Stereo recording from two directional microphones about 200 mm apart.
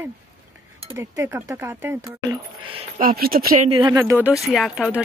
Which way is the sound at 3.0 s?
45° right (ahead or behind).